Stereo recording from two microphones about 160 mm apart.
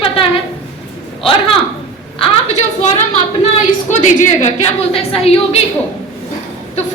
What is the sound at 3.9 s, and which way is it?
A woman's voice, 50° left (ahead or behind).